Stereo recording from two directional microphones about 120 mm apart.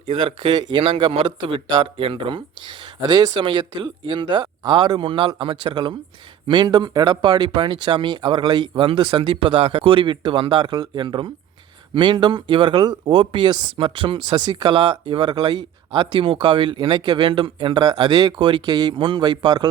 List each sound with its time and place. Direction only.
0.0 s speech: 50° right (ahead or behind)